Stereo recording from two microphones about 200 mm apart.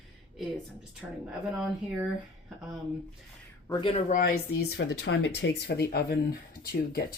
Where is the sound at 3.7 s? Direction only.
25° left (ahead or behind).